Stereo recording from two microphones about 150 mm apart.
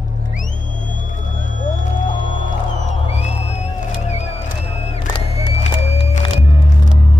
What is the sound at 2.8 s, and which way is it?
Music, 45° left (ahead or behind).